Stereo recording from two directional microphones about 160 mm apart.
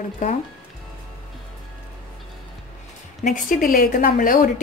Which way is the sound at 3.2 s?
55° left (ahead or behind).